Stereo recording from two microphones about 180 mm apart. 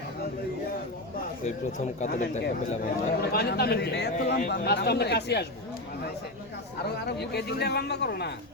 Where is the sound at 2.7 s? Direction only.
55° left (ahead or behind).